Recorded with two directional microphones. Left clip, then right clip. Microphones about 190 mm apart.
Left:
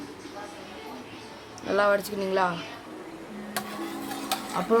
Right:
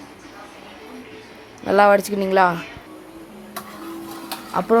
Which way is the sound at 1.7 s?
40° right (ahead or behind).